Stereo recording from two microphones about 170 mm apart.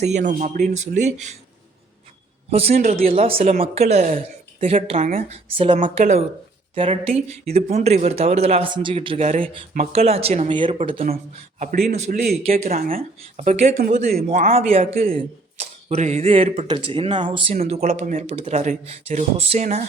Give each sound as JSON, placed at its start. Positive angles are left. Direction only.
{"t": 0.0, "sound": "a man's voice", "side_deg": -45}
{"t": 2.5, "sound": "speech", "side_deg": -35}
{"t": 4.6, "sound": "speech", "side_deg": -35}
{"t": 9.7, "sound": "speech", "side_deg": -40}
{"t": 11.6, "sound": "a man's voice", "side_deg": -55}
{"t": 11.9, "sound": "speech", "side_deg": -40}